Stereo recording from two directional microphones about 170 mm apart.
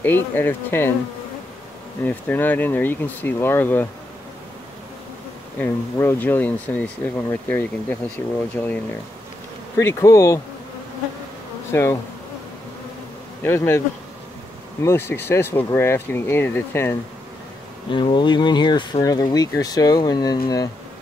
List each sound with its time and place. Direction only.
0.0 s speech: 10° left (ahead or behind)
2.0 s speech: 10° left (ahead or behind)
5.6 s speech: 15° left (ahead or behind)
9.8 s speech: 15° left (ahead or behind)
11.7 s speech: 15° left (ahead or behind)
13.4 s speech: 15° left (ahead or behind)
17.9 s speech: 30° left (ahead or behind)